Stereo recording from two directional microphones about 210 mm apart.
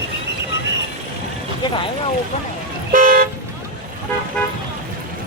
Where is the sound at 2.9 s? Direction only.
40° right (ahead or behind).